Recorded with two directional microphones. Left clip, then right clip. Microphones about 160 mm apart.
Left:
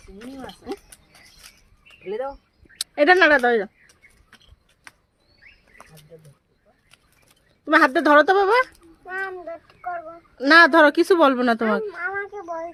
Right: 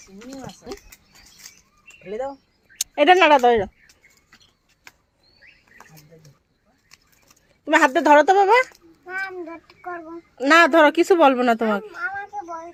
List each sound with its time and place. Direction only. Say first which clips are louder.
2.9 s speech: right 1 dB; 5° right (ahead or behind)
7.6 s speech: even; 5° right (ahead or behind)
10.3 s speech: left 1 dB; 5° left (ahead or behind)
11.9 s a child's voice: even; 50° left (ahead or behind)